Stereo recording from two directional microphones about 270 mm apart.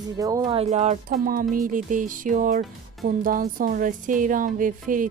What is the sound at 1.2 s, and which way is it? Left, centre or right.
Music, right.